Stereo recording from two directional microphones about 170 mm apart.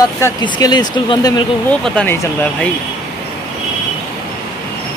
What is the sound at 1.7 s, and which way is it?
Speech, 5° left (ahead or behind).